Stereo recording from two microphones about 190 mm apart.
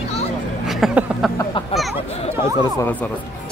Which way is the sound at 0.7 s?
Centre (ahead or behind).